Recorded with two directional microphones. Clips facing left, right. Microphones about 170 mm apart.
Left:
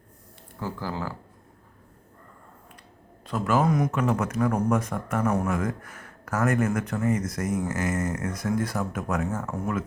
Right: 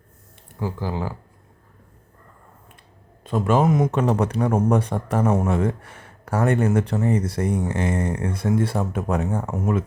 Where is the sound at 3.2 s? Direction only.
20° right (ahead or behind).